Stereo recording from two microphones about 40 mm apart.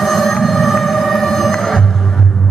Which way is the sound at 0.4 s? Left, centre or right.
Centre.